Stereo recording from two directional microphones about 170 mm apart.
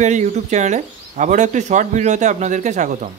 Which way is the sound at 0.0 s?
45° right (ahead or behind).